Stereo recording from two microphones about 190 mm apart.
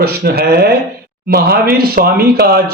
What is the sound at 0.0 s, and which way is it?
Speech, 55° right (ahead or behind).